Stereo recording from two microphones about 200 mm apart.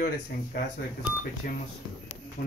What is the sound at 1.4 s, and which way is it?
Speech, 45° left (ahead or behind).